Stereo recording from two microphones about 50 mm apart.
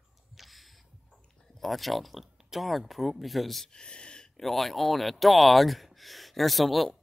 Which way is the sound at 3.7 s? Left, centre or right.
Centre.